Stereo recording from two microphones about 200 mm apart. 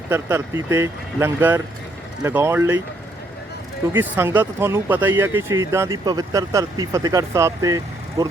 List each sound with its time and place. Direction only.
0.1 s speech: 15° right (ahead or behind)
3.9 s speech: 10° right (ahead or behind)